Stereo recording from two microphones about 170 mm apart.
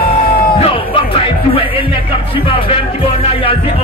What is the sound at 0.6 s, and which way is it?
Music, 30° left (ahead or behind).